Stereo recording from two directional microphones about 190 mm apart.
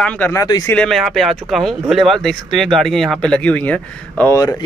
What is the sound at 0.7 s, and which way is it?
Speech, 5° left (ahead or behind).